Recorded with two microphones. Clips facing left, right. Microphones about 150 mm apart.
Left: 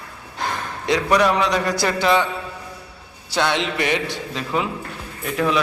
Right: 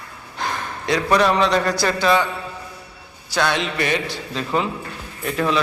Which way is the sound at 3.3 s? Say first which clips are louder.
Even; 25° left (ahead or behind).